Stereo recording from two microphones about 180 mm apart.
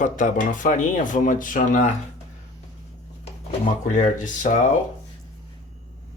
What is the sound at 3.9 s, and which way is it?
Speech, 45° left (ahead or behind).